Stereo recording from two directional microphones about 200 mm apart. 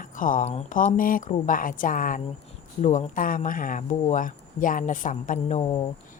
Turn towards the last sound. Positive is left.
turn(degrees=35)  # may be behind; listen again after turning